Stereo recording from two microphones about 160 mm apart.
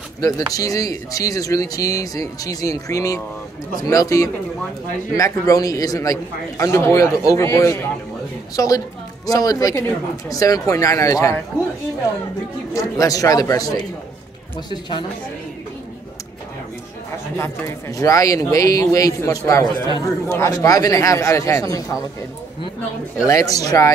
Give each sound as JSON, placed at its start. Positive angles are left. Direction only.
{"t": 0.2, "sound": "speech", "side_deg": 20}
{"t": 12.7, "sound": "speech", "side_deg": 20}
{"t": 17.4, "sound": "speech", "side_deg": 20}
{"t": 23.2, "sound": "speech", "side_deg": 20}